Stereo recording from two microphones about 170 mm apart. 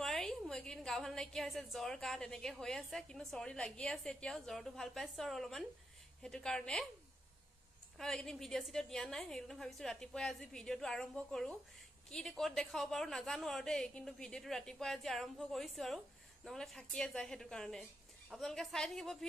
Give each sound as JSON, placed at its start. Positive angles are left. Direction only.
{"t": 0.0, "sound": "a woman's voice", "side_deg": 0}
{"t": 8.0, "sound": "a woman's voice", "side_deg": 5}